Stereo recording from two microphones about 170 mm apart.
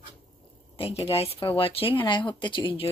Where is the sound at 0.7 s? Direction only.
35° left (ahead or behind).